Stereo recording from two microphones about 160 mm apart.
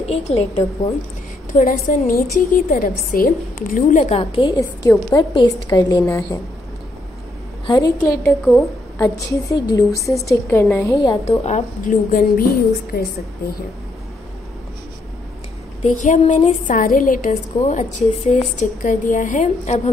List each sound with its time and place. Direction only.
0.0 s a woman's voice: 40° left (ahead or behind)
1.5 s a woman's voice: 55° left (ahead or behind)
4.0 s a woman's voice: 30° left (ahead or behind)
4.6 s a woman's voice: 20° left (ahead or behind)
7.6 s a woman's voice: 25° left (ahead or behind)
8.2 s a woman's voice: centre (ahead or behind)
8.9 s a woman's voice: 15° left (ahead or behind)
11.4 s a woman's voice: 45° left (ahead or behind); by 13.0 s 70° left (ahead or behind)
15.8 s a woman's voice: 50° left (ahead or behind)
17.6 s a woman's voice: 45° left (ahead or behind)